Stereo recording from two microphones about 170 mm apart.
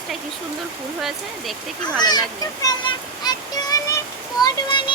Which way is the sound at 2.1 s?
20° left (ahead or behind).